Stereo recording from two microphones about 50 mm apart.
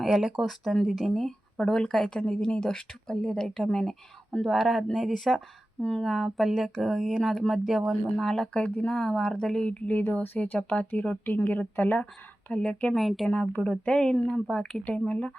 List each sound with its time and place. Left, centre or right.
0.0 s speech: centre
0.4 s speech: centre
1.5 s speech: centre
3.2 s speech: centre
4.4 s speech: centre
7.7 s speech: centre
8.1 s speech: centre
9.6 s speech: left
12.5 s speech: left
13.0 s speech: centre
13.3 s speech: left